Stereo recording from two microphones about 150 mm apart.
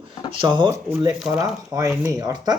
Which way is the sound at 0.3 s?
30° right (ahead or behind).